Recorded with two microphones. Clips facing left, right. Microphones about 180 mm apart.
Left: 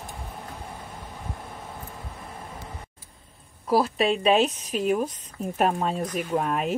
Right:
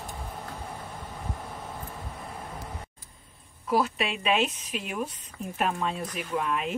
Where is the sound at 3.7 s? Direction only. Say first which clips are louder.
Left 5 dB; 35° left (ahead or behind).